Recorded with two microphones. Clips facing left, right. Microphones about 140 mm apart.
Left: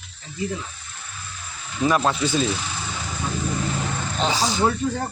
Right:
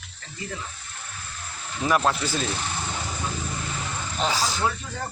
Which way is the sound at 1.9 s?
5° right (ahead or behind).